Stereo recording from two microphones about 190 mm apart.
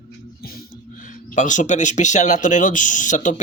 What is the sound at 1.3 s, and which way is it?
Speech, 40° left (ahead or behind).